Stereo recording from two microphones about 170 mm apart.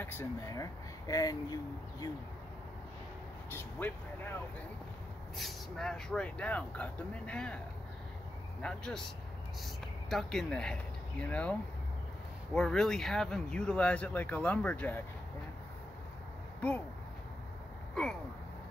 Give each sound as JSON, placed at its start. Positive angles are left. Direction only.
{"t": 0.0, "sound": "speech", "side_deg": 15}
{"t": 3.5, "sound": "speech", "side_deg": 10}
{"t": 5.4, "sound": "speech", "side_deg": 5}
{"t": 8.6, "sound": "speech", "side_deg": 5}
{"t": 10.0, "sound": "speech", "side_deg": 0}
{"t": 12.5, "sound": "speech", "side_deg": 5}
{"t": 18.0, "sound": "speech", "side_deg": 5}